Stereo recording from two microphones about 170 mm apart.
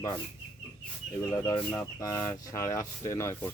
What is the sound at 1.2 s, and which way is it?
Speech, 15° left (ahead or behind).